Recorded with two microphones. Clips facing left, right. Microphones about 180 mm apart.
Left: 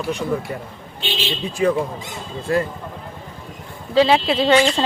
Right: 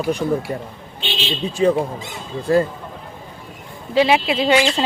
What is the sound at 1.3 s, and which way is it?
Speech, 30° right (ahead or behind).